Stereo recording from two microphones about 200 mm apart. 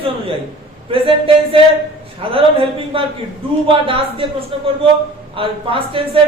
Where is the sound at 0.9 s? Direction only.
25° right (ahead or behind).